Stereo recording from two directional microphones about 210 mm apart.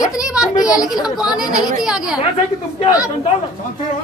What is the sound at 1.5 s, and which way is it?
Speech, 20° left (ahead or behind).